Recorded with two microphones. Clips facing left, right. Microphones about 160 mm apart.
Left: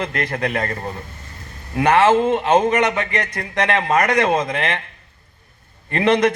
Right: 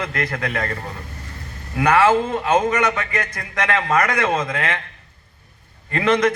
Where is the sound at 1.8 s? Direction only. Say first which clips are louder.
Left 2 dB; 25° left (ahead or behind).